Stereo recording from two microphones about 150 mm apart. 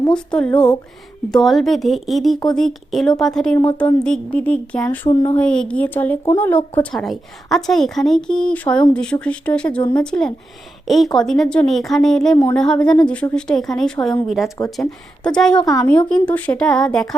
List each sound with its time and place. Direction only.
0.1 s a woman's voice: 5° left (ahead or behind)
5.0 s speech: 35° left (ahead or behind)
5.4 s a woman's voice: 5° left (ahead or behind)